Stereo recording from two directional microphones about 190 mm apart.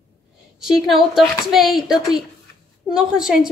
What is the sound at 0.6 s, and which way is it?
A woman's voice, centre (ahead or behind).